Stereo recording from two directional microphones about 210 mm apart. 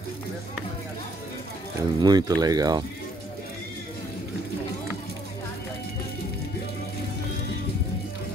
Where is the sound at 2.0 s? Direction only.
20° right (ahead or behind).